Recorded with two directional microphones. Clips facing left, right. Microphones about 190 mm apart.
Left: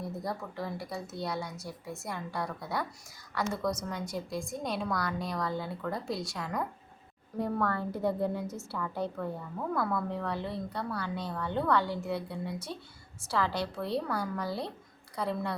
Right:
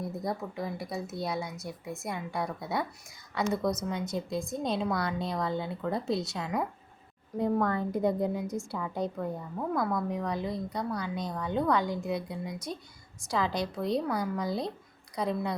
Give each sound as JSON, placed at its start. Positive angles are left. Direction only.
{"t": 0.0, "sound": "a woman's voice", "side_deg": -20}